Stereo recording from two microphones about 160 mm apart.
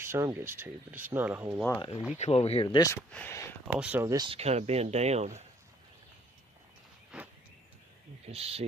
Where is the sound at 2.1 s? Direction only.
40° left (ahead or behind).